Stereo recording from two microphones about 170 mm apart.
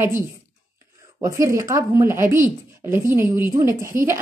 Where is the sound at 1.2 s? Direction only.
15° right (ahead or behind).